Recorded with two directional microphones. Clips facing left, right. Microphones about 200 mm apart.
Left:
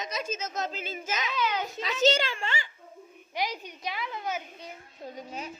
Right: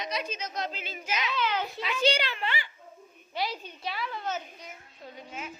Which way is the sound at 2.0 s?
45° left (ahead or behind).